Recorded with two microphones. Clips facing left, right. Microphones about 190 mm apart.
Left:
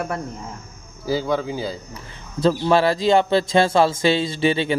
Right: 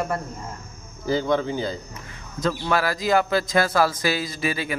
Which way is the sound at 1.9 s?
30° left (ahead or behind).